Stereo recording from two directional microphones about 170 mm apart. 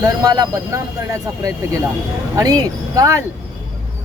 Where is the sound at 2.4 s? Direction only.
20° right (ahead or behind).